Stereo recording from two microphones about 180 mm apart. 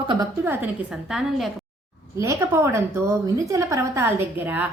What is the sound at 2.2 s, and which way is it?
A woman's voice, 15° right (ahead or behind).